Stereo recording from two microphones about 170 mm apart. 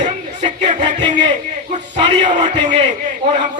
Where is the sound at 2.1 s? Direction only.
45° right (ahead or behind).